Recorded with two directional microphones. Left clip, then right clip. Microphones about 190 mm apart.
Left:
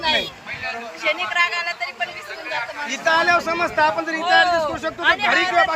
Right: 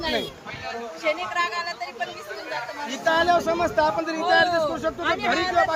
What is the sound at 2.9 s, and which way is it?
Speech, 15° left (ahead or behind).